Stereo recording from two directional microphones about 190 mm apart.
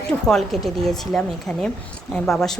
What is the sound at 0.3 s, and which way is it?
A woman's voice, centre (ahead or behind).